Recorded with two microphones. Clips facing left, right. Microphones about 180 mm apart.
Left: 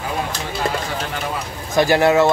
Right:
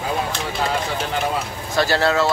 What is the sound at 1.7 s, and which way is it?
Speech, 15° left (ahead or behind).